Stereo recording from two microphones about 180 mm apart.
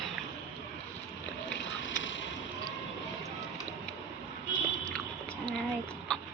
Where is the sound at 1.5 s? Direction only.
90° left.